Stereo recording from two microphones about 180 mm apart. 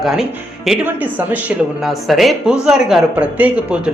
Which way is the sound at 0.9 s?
10° right (ahead or behind).